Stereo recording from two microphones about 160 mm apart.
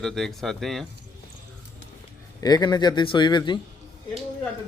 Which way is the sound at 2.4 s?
25° left (ahead or behind).